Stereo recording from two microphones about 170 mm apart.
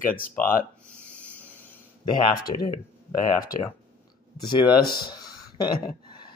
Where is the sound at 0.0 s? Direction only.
55° left (ahead or behind).